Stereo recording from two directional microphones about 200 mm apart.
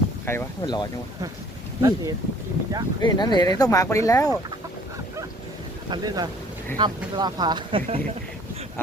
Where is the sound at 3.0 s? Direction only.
20° left (ahead or behind).